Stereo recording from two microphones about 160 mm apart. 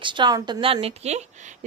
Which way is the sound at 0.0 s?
30° right (ahead or behind).